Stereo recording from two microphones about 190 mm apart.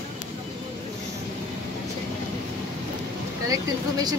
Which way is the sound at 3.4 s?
20° right (ahead or behind).